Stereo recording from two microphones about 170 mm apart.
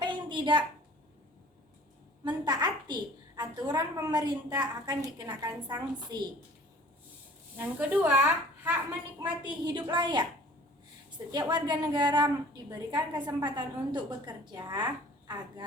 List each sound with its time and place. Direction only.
0.0 s a sound: 30° right (ahead or behind)
2.2 s a woman's voice: 25° right (ahead or behind)
7.5 s a woman's voice: 10° right (ahead or behind)
9.2 s a woman's voice: 25° right (ahead or behind)
11.3 s a woman's voice: 25° right (ahead or behind)